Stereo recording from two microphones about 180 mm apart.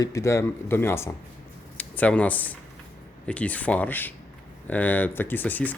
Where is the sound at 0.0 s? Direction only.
15° left (ahead or behind).